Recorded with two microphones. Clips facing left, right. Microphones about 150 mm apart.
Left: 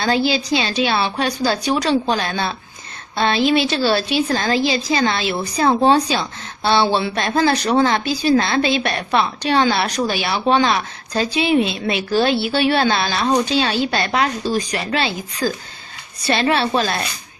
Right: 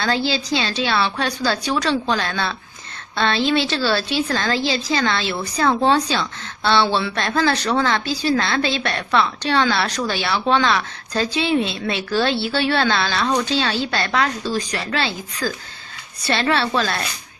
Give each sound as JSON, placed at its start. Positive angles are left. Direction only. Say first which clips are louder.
{"t": 0.0, "sound": "a woman's voice", "louder": "left 3 dB", "side_deg": 15}